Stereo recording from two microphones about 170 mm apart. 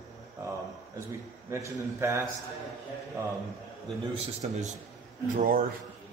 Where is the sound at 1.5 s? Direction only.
15° right (ahead or behind).